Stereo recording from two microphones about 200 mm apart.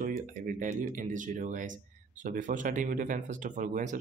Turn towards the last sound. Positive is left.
turn(degrees=-40)  # may be behind; listen again after turning